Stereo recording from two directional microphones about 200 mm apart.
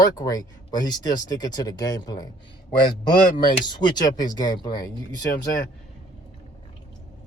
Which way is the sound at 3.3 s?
20° left (ahead or behind).